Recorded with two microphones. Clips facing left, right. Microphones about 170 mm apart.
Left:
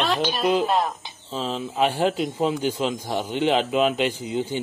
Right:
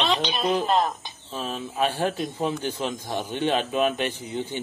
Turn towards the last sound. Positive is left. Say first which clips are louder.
# left 4 dB
turn(degrees=15)  # may be behind; listen again after turning